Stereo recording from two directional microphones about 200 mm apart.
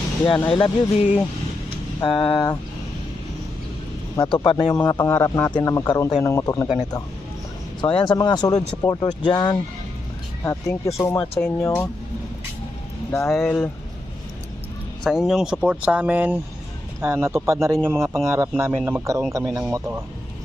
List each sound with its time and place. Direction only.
0.3 s a man's voice: 25° left (ahead or behind)
4.2 s a man's voice: 25° left (ahead or behind)
7.8 s a man's voice: 25° left (ahead or behind)
13.1 s speech: 5° left (ahead or behind)
15.0 s speech: centre (ahead or behind)